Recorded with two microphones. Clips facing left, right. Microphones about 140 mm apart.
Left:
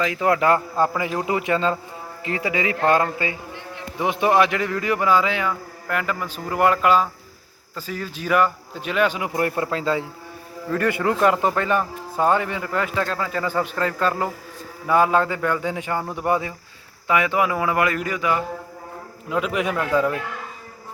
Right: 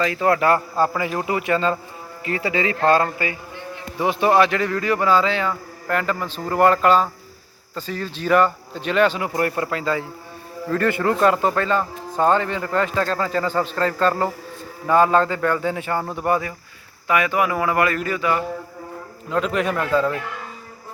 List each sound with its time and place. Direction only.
0.0 s a man's voice: 15° left (ahead or behind)